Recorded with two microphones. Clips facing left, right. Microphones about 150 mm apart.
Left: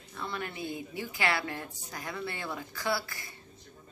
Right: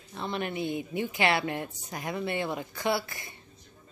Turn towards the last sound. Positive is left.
turn(degrees=-20)  # may be behind; listen again after turning